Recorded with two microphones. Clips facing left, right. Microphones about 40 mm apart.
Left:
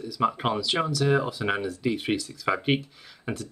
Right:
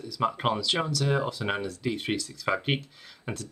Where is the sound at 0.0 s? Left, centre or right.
Centre.